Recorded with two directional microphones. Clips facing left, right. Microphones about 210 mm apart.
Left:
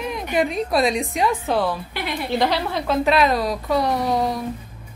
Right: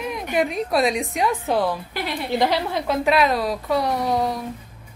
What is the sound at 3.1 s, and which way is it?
A woman's voice, 5° right (ahead or behind).